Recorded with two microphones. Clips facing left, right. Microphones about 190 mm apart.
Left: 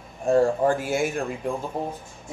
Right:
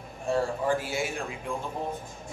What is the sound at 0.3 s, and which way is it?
Speech, 50° left (ahead or behind).